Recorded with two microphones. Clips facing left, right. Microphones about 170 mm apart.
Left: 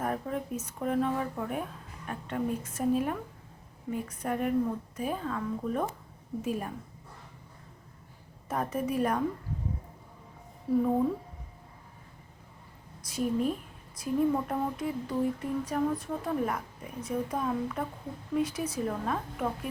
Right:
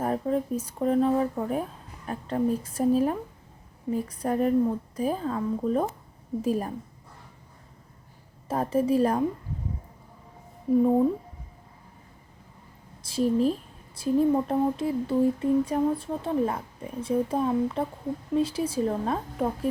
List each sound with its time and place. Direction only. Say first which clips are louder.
0.0 s speech: right 6 dB; 30° right (ahead or behind)
8.4 s speech: right 7 dB; 30° right (ahead or behind)
10.7 s a woman's voice: right 5 dB; 15° right (ahead or behind)
13.0 s speech: right 6 dB; 30° right (ahead or behind)